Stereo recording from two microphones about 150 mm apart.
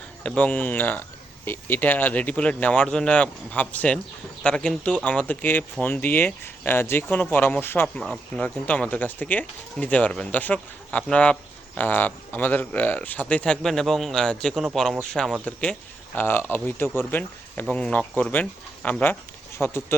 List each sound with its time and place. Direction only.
0.2 s speech: 10° left (ahead or behind)